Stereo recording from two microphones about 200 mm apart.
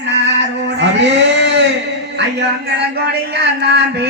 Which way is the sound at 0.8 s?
60° right (ahead or behind).